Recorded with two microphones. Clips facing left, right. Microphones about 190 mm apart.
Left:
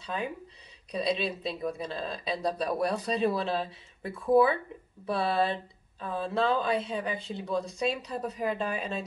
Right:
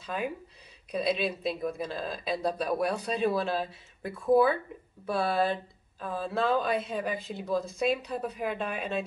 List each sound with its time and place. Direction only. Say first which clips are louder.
0.0 s speech: right 1 dB; 5° right (ahead or behind)